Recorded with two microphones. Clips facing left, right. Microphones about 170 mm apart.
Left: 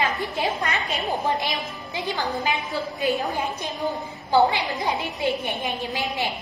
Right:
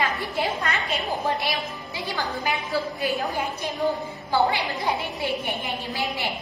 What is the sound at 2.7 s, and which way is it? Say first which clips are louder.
A woman's voice: even; 20° left (ahead or behind).